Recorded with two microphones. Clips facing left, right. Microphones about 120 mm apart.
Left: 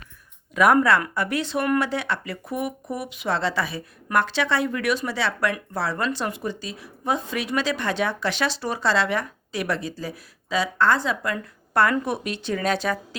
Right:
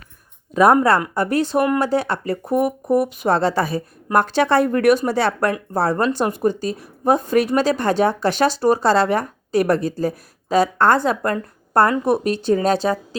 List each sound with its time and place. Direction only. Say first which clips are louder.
0.5 s speech: right 4 dB; 35° right (ahead or behind)